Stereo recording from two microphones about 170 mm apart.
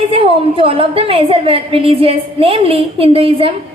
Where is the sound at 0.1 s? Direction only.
35° right (ahead or behind).